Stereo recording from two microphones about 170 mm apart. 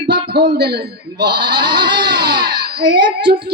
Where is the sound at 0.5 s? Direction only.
75° right (ahead or behind).